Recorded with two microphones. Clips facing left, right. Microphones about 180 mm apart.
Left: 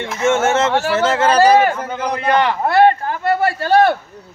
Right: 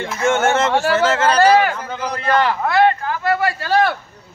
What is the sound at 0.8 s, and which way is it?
Speech, 5° left (ahead or behind).